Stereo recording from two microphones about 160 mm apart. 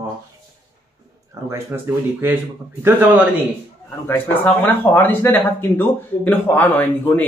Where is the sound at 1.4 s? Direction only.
20° right (ahead or behind).